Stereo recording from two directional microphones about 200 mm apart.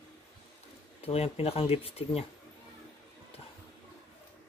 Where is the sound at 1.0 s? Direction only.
30° left (ahead or behind).